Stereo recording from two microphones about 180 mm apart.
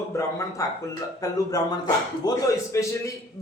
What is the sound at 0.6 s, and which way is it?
A man's voice, 20° left (ahead or behind).